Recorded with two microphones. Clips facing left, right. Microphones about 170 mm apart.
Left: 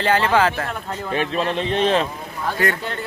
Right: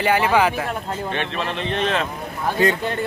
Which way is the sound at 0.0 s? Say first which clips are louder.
Even; 10° right (ahead or behind).